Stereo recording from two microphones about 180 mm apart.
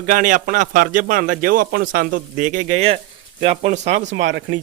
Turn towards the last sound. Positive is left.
turn(degrees=-85)